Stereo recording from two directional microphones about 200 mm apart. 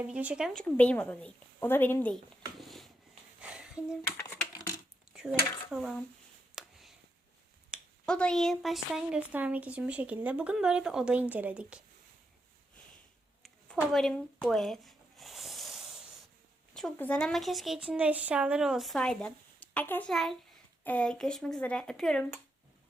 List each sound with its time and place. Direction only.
0.0 s speech: 5° right (ahead or behind)
0.6 s speech: 10° left (ahead or behind)
2.6 s a sound: centre (ahead or behind)
4.2 s a sound: 15° left (ahead or behind)
5.1 s speech: centre (ahead or behind)
6.6 s a sound: centre (ahead or behind)
7.7 s speech: 5° left (ahead or behind)
13.4 s zipper: centre (ahead or behind)
16.7 s speech: 5° left (ahead or behind)